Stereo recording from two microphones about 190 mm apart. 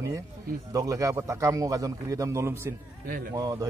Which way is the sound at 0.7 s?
15° right (ahead or behind).